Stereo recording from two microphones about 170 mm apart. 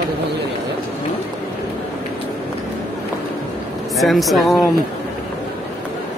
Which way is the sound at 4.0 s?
Centre (ahead or behind).